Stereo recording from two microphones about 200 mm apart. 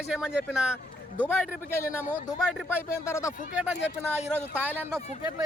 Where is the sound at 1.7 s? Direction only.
15° left (ahead or behind).